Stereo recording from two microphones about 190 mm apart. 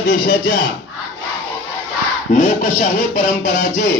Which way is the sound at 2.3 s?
35° left (ahead or behind).